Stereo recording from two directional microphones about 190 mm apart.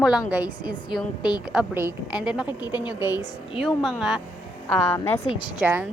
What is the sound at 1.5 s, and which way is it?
Speech, 10° right (ahead or behind).